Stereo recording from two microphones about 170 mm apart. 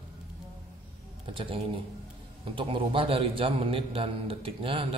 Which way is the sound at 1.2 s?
30° right (ahead or behind).